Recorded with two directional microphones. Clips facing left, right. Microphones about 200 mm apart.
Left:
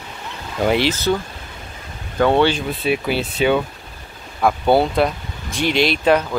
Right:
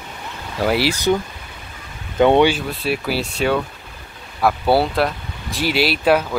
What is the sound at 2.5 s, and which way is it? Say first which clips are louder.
Speech: left 1 dB; 5° right (ahead or behind).